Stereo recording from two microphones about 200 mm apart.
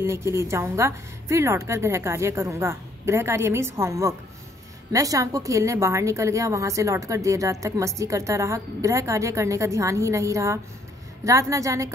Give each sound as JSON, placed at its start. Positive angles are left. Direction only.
{"t": 0.0, "sound": "a woman's voice", "side_deg": -15}